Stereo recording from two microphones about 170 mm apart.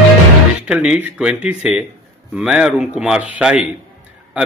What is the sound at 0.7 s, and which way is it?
A man's voice, 5° right (ahead or behind).